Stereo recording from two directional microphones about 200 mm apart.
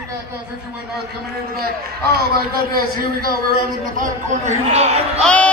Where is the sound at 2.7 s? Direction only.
45° right (ahead or behind).